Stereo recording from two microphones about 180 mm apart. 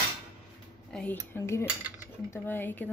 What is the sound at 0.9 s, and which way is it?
Speech, 10° left (ahead or behind).